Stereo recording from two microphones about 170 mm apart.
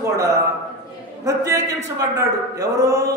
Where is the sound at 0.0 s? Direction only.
15° right (ahead or behind).